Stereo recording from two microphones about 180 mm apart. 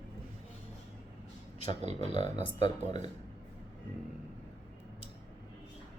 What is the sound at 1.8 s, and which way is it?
Speech, 40° right (ahead or behind).